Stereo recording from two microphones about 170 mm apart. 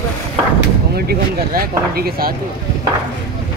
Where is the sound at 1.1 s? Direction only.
65° right (ahead or behind).